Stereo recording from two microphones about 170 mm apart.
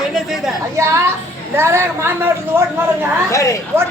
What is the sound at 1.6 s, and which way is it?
A man's voice, 15° right (ahead or behind).